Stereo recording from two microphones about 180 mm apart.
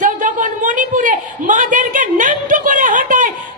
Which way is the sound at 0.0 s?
45° right (ahead or behind).